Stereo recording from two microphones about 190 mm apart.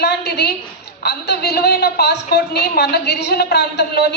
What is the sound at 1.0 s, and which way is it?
A woman's voice, 60° left (ahead or behind).